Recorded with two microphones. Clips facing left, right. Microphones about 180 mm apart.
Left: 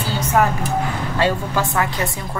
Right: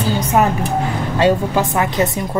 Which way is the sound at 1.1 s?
20° right (ahead or behind).